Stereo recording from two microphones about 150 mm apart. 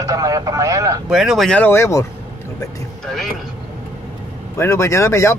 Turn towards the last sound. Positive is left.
turn(degrees=20)  # may be behind; listen again after turning